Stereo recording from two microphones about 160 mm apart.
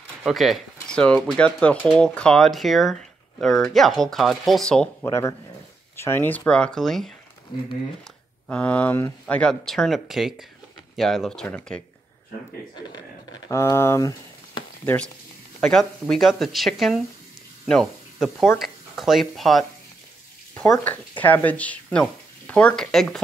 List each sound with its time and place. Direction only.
0.2 s speech: centre (ahead or behind)
5.0 s speech: 20° left (ahead or behind); by 7.1 s centre (ahead or behind)
8.5 s speech: 10° left (ahead or behind)
12.7 s speech: 25° left (ahead or behind)
13.6 s speech: 15° left (ahead or behind)
15.6 s speech: 5° left (ahead or behind)
20.7 s speech: 10° left (ahead or behind)